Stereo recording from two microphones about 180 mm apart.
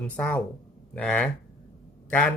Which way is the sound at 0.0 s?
5° left (ahead or behind).